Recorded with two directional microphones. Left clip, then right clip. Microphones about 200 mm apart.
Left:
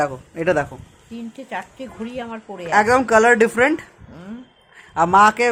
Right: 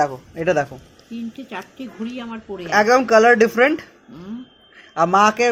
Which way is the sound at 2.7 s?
20° left (ahead or behind).